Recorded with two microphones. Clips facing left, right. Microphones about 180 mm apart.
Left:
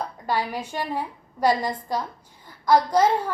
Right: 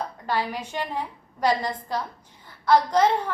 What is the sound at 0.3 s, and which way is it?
A woman's voice, 10° left (ahead or behind).